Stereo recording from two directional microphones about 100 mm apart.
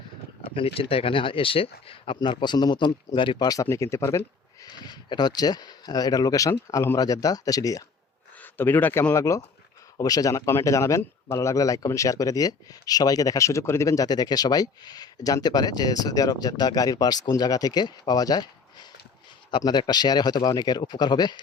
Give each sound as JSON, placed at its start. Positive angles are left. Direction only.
{"t": 0.5, "sound": "speech", "side_deg": 70}
{"t": 2.2, "sound": "speech", "side_deg": 50}
{"t": 3.5, "sound": "speech", "side_deg": 30}
{"t": 4.6, "sound": "speech", "side_deg": 45}
{"t": 8.4, "sound": "speech", "side_deg": 20}